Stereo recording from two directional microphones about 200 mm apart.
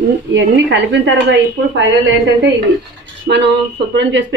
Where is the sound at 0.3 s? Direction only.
70° right (ahead or behind).